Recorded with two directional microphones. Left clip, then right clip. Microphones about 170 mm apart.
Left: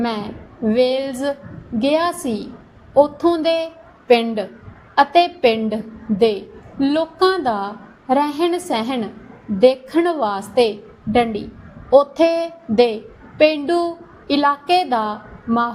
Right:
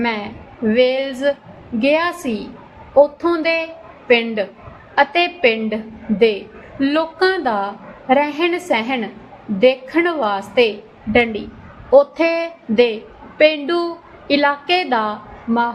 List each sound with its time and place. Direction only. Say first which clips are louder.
0.0 s a woman's voice: right 2 dB; 40° left (ahead or behind)